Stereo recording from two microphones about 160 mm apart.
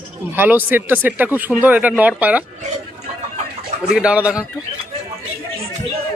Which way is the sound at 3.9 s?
5° right (ahead or behind).